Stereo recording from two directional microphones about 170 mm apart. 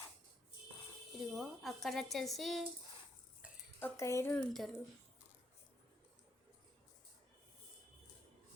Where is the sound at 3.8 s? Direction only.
15° left (ahead or behind).